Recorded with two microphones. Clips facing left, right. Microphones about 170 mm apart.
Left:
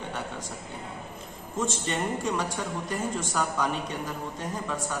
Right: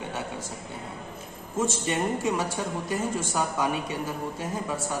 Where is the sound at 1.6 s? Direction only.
10° right (ahead or behind).